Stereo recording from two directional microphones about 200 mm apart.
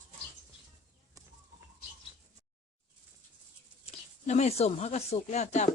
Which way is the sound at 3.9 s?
35° left (ahead or behind).